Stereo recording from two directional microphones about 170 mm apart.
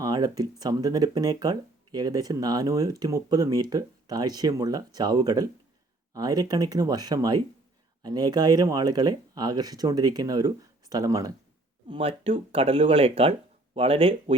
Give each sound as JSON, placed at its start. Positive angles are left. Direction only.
{"t": 0.0, "sound": "speech", "side_deg": -20}
{"t": 11.9, "sound": "speech", "side_deg": -35}